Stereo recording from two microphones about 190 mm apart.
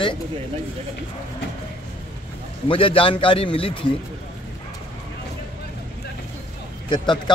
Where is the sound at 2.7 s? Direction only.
30° left (ahead or behind).